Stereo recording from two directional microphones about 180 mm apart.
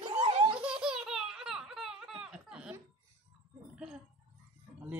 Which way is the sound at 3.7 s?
5° right (ahead or behind).